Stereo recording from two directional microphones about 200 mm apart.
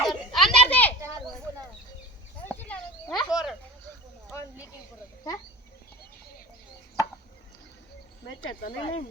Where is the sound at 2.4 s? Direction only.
10° left (ahead or behind).